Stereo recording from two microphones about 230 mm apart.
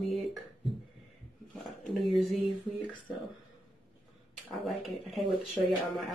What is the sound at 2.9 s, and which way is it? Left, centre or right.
Speech, left.